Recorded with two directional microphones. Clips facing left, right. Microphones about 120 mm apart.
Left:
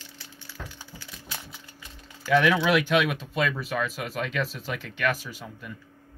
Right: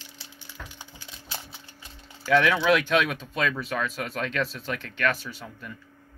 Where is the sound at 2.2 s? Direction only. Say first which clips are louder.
Right 1 dB; centre (ahead or behind).